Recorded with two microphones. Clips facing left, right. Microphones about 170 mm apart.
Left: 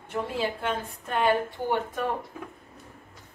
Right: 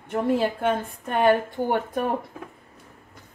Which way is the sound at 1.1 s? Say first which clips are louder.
Right 4 dB; 50° right (ahead or behind).